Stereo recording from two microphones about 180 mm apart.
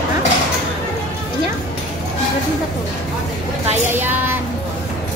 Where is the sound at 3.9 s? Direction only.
10° right (ahead or behind).